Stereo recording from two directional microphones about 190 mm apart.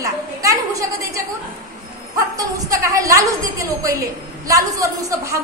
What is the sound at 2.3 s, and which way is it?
A woman's voice, 20° right (ahead or behind).